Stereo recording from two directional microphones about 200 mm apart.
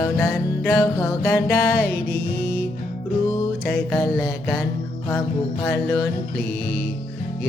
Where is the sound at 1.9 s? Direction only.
50° left (ahead or behind).